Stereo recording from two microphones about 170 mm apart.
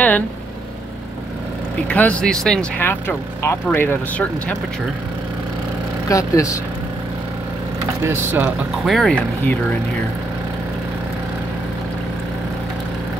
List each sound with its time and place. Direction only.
1.9 s speech: 10° left (ahead or behind)
6.0 s speech: 20° left (ahead or behind)
8.0 s speech: 15° right (ahead or behind); by 9.6 s 5° left (ahead or behind)